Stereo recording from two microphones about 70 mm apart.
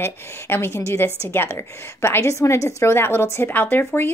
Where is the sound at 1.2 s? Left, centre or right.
Left.